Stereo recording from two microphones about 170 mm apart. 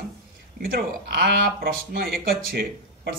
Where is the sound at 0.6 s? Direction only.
60° right (ahead or behind).